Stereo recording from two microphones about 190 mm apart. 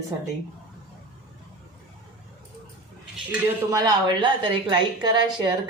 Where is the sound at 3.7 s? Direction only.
20° right (ahead or behind).